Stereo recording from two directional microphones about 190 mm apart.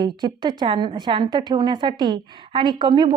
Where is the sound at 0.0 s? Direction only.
25° right (ahead or behind).